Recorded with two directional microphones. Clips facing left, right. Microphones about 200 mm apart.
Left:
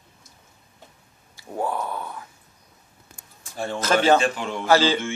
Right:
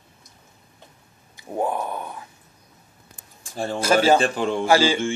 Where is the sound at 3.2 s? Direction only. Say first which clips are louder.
Right 2 dB; 35° right (ahead or behind).